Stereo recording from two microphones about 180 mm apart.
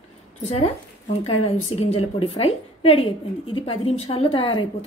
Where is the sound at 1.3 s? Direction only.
35° left (ahead or behind).